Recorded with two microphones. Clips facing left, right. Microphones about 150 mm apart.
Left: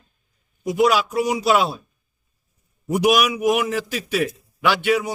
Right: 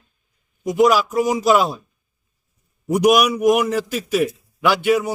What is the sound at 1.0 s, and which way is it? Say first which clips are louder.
Speech: right 3 dB; 45° right (ahead or behind).